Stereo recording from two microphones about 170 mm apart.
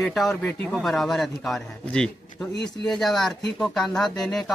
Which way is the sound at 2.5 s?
80° left.